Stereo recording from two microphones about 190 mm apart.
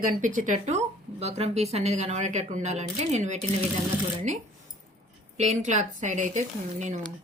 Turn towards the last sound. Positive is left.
turn(degrees=-40)  # may be behind; listen again after turning